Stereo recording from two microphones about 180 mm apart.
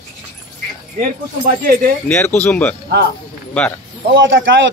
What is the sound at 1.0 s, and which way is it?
Speech, 50° right (ahead or behind).